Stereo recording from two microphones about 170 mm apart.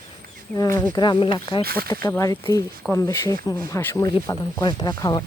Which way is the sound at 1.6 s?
65° right (ahead or behind).